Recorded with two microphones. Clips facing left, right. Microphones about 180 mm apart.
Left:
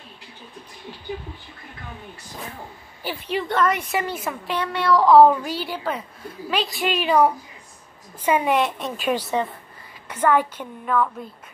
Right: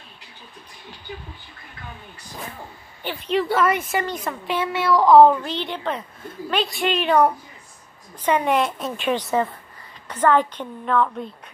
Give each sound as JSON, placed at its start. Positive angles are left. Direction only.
{"t": 3.0, "sound": "a woman's voice", "side_deg": 5}
{"t": 3.4, "sound": "a woman's voice", "side_deg": -5}
{"t": 4.6, "sound": "a woman's voice", "side_deg": -5}